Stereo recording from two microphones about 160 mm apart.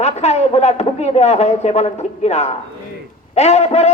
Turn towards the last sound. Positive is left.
turn(degrees=45)  # may be behind; listen again after turning